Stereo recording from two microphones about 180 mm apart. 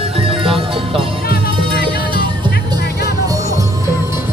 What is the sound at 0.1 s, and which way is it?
Music, 30° right (ahead or behind).